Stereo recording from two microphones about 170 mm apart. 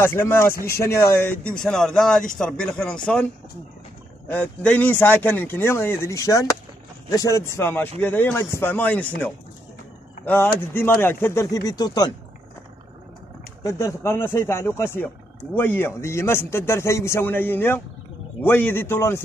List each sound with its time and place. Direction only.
0.0 s a man's voice: 15° left (ahead or behind)
1.5 s speech: 5° left (ahead or behind)
4.3 s a man's voice: 10° left (ahead or behind)
13.7 s a man's voice: 15° left (ahead or behind)